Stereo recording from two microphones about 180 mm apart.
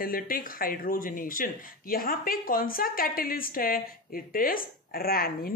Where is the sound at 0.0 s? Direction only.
50° left (ahead or behind).